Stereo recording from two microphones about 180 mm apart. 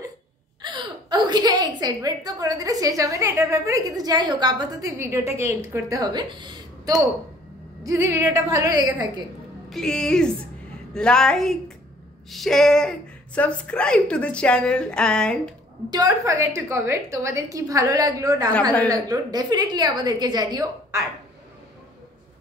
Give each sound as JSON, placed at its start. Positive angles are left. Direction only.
{"t": 0.6, "sound": "a woman's voice", "side_deg": -25}
{"t": 9.7, "sound": "a woman's voice", "side_deg": 5}
{"t": 15.9, "sound": "a woman's voice", "side_deg": -20}